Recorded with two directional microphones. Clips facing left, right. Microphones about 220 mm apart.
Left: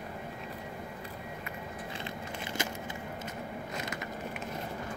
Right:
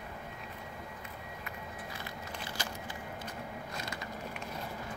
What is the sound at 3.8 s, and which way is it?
Vehicle, 20° left (ahead or behind).